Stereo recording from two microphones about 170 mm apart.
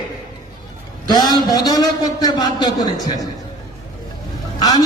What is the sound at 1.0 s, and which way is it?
A man's voice, 25° left (ahead or behind).